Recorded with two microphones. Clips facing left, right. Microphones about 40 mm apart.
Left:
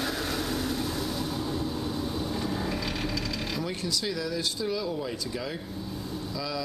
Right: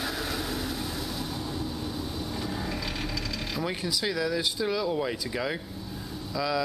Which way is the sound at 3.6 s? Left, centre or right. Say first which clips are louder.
Right 2 dB; centre.